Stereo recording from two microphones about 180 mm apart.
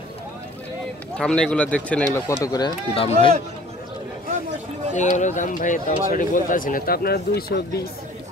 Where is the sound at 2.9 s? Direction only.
30° left (ahead or behind).